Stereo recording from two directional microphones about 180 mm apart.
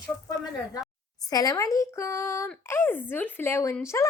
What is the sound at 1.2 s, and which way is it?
Speech, 20° left (ahead or behind).